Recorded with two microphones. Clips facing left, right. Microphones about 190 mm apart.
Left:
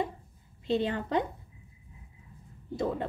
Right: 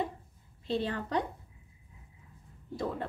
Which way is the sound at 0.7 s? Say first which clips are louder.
Left 4 dB; 20° left (ahead or behind).